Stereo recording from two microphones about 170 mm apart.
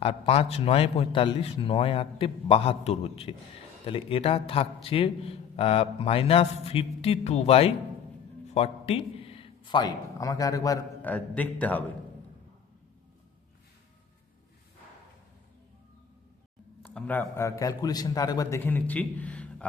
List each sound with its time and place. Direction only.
0.0 s a man's voice: 35° left (ahead or behind); by 11.8 s 10° left (ahead or behind)
16.8 s a man's voice: 10° left (ahead or behind)